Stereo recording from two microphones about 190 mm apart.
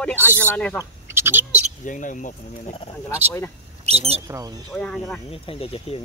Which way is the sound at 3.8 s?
30° right (ahead or behind).